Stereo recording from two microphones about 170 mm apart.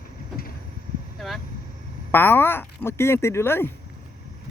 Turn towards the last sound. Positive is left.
turn(degrees=15)  # may be behind; listen again after turning